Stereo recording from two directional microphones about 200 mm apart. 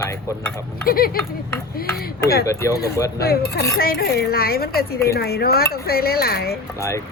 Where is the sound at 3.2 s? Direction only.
50° left (ahead or behind).